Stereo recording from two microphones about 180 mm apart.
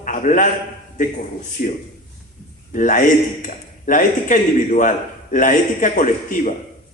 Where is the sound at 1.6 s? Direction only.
50° left (ahead or behind).